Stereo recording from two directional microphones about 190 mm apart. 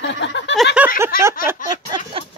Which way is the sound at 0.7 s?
10° right (ahead or behind).